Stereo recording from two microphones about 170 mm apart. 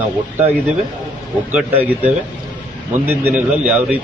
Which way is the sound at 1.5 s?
10° right (ahead or behind).